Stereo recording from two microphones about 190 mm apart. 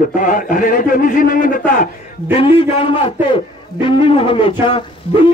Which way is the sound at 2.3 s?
30° left (ahead or behind).